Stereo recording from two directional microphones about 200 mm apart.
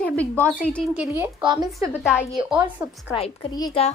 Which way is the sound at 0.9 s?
10° right (ahead or behind).